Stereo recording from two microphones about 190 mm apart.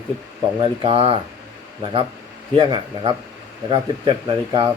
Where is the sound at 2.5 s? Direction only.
25° right (ahead or behind).